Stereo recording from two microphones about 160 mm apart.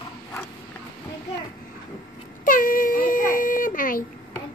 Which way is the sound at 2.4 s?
60° left (ahead or behind).